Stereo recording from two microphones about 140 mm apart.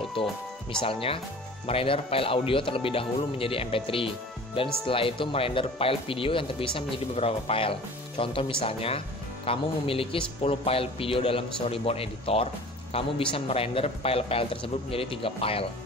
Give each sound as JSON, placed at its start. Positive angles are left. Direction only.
{"t": 0.2, "sound": "a man's voice", "side_deg": 40}